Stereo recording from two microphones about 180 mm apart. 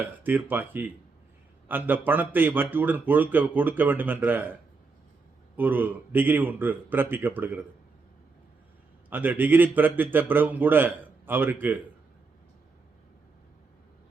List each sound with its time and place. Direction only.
0.0 s a man's voice: 10° right (ahead or behind)
5.5 s a man's voice: 10° right (ahead or behind)
9.0 s a man's voice: 10° right (ahead or behind)